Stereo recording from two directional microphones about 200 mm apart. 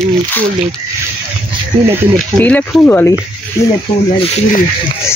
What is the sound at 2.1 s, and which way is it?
Speech, 10° left (ahead or behind).